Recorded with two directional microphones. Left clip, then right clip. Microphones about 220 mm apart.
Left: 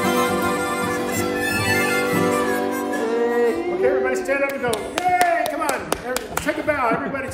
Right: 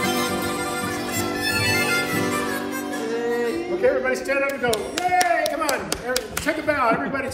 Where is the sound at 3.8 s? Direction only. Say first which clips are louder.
Even; centre (ahead or behind).